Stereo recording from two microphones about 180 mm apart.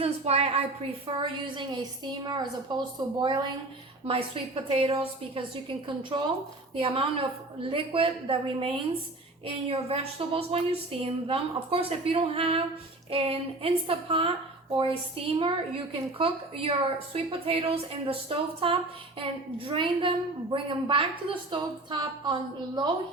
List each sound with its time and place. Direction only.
0.0 s a woman's voice: 35° right (ahead or behind)
15.4 s a woman's voice: 30° right (ahead or behind)